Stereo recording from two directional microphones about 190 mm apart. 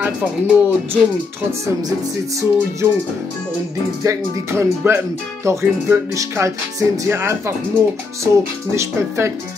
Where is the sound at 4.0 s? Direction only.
15° right (ahead or behind).